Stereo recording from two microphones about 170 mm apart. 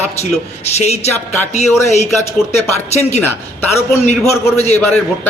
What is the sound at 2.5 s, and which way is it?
Speech, 40° left (ahead or behind).